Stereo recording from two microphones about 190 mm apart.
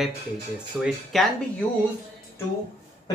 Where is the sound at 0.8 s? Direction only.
5° right (ahead or behind).